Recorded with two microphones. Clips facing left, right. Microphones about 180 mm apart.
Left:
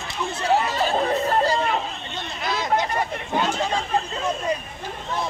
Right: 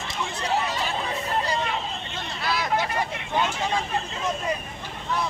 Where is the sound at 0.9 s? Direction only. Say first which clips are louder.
Left 7 dB; 50° left (ahead or behind).